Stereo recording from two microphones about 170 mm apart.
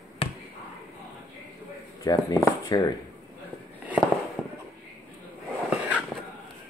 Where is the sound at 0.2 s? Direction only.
35° left (ahead or behind).